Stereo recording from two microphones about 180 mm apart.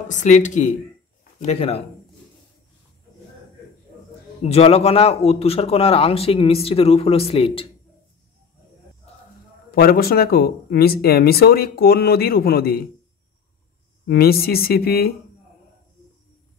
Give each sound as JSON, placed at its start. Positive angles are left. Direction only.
{"t": 0.1, "sound": "a man's voice", "side_deg": 45}
{"t": 4.4, "sound": "a man's voice", "side_deg": 35}
{"t": 9.7, "sound": "speech", "side_deg": 55}
{"t": 14.0, "sound": "speech", "side_deg": 60}